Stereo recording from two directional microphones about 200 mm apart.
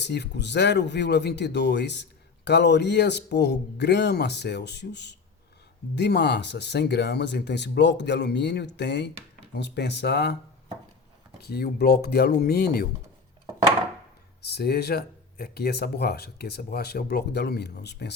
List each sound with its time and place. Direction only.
0.0 s speech: 60° left (ahead or behind)
11.3 s speech: 55° left (ahead or behind)
14.4 s speech: 55° left (ahead or behind)